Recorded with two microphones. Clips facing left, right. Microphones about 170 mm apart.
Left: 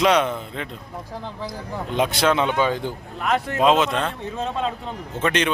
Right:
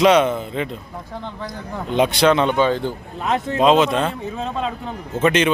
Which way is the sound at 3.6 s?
Centre (ahead or behind).